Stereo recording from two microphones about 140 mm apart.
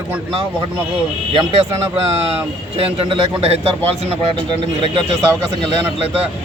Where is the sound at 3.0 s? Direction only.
45° right (ahead or behind).